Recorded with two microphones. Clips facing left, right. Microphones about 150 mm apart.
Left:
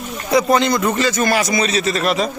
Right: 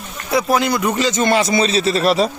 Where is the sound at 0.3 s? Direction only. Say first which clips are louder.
Left 2 dB; 5° right (ahead or behind); by 2.3 s 35° right (ahead or behind).